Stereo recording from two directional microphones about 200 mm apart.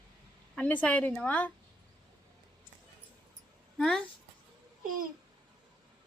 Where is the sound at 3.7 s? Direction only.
Centre (ahead or behind).